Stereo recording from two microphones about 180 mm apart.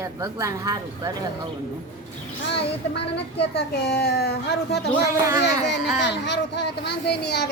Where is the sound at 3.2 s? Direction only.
70° left (ahead or behind).